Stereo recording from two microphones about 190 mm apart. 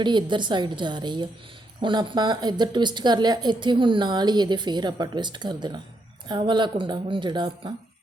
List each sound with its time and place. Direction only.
0.0 s speech: 25° right (ahead or behind)